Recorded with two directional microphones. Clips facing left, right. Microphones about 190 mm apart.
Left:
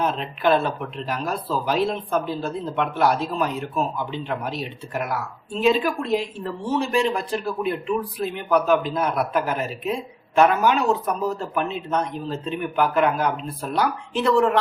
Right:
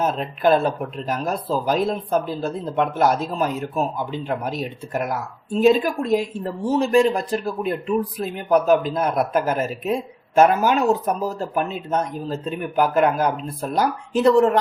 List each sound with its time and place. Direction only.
0.0 s speech: 45° right (ahead or behind)